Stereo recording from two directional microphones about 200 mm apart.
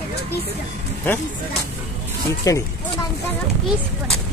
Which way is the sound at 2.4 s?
15° left (ahead or behind).